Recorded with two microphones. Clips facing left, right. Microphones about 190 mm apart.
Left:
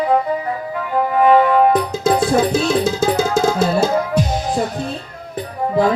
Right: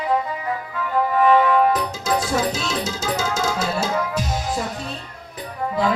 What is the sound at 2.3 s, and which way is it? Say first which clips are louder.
Music: left 7 dB; 35° left (ahead or behind).